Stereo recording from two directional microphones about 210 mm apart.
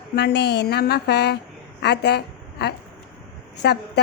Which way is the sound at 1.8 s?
50° left (ahead or behind).